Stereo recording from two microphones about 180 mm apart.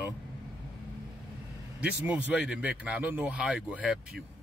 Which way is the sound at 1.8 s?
5° right (ahead or behind).